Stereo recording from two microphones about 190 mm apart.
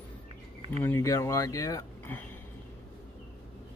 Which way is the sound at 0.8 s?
15° left (ahead or behind).